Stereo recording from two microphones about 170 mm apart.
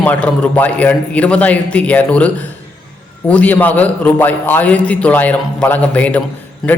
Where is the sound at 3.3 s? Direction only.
10° left (ahead or behind).